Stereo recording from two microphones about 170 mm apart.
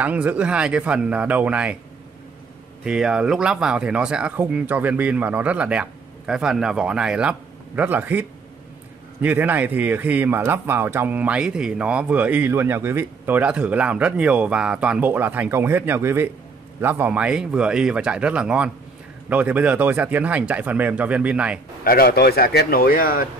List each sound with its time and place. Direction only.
0.0 s speech: 10° right (ahead or behind)
2.8 s speech: 5° right (ahead or behind)
21.8 s a man's voice: 60° left (ahead or behind)